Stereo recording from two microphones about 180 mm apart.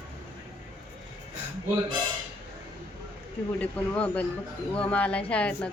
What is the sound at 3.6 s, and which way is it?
A woman's voice, 10° left (ahead or behind).